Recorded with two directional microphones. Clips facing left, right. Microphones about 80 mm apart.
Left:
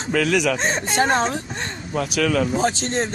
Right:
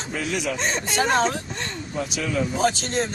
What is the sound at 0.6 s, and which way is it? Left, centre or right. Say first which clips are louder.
Speech: left 3 dB; left.